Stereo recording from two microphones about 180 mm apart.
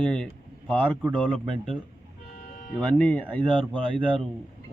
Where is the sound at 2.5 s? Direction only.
50° left (ahead or behind).